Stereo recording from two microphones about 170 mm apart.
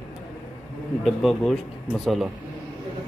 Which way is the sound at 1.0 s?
Centre (ahead or behind).